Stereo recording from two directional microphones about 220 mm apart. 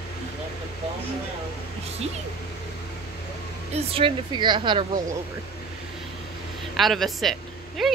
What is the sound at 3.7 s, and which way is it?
Speech, 25° right (ahead or behind).